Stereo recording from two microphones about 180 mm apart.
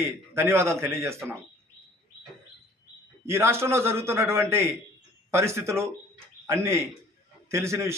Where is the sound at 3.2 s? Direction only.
15° right (ahead or behind).